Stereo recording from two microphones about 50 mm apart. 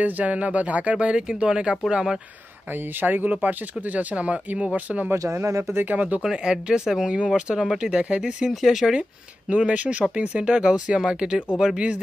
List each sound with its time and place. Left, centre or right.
0.0 s speech: right; by 2.1 s centre
2.7 s speech: right
5.1 s speech: right
5.9 s speech: right
6.2 s speech: centre
8.5 s speech: centre
9.5 s speech: right; by 11.8 s centre